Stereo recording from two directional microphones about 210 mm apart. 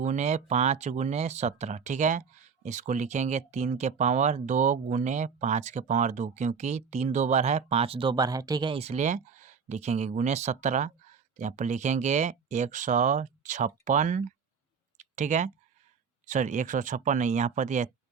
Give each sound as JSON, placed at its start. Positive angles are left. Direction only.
{"t": 0.0, "sound": "speech", "side_deg": -35}
{"t": 14.9, "sound": "clicking", "side_deg": -35}
{"t": 16.2, "sound": "speech", "side_deg": -35}